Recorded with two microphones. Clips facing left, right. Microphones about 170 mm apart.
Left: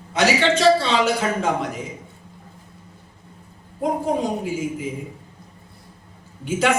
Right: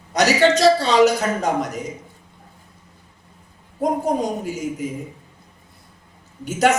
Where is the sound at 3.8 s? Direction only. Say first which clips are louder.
Right 1 dB; 40° right (ahead or behind).